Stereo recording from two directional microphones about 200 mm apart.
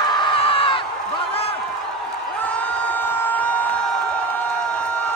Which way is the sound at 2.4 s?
5° left (ahead or behind).